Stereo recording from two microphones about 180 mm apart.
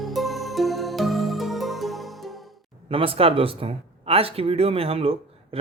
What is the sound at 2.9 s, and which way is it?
A man's voice, 30° right (ahead or behind).